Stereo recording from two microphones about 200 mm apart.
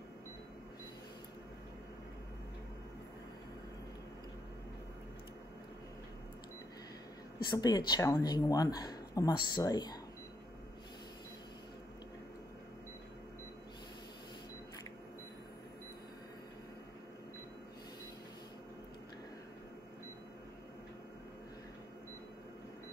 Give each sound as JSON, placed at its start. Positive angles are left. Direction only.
{"t": 7.4, "sound": "speech", "side_deg": 20}